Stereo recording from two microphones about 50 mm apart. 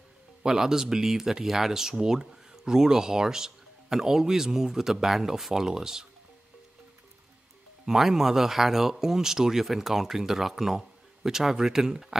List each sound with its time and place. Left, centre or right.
0.4 s speech: centre
7.8 s speech: centre